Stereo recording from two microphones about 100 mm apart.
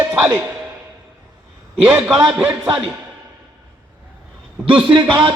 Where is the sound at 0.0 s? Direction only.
20° right (ahead or behind).